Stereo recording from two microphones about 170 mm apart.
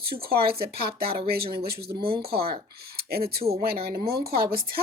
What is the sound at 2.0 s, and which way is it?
Speech, 30° right (ahead or behind).